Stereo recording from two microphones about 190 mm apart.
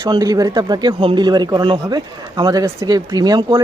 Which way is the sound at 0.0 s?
20° right (ahead or behind).